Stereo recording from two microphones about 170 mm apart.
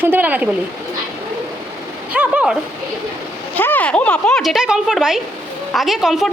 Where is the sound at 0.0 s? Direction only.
10° right (ahead or behind).